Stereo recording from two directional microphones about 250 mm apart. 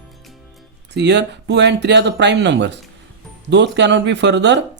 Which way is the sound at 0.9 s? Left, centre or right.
Right.